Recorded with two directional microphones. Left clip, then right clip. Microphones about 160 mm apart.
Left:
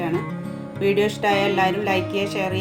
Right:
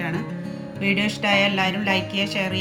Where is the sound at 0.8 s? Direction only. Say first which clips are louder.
Left 3 dB; 55° left (ahead or behind).